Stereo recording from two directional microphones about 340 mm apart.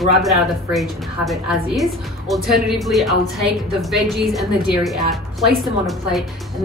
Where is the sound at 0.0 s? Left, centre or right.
Centre.